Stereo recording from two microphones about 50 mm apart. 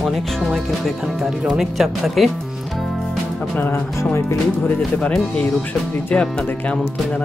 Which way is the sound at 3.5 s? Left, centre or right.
Left.